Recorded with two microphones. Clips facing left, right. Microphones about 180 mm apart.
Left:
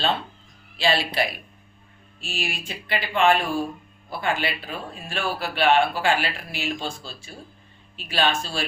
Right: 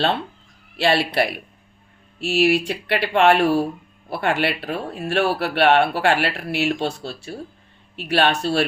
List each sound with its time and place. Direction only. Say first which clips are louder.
0.8 s speech: right 4 dB; 65° right (ahead or behind)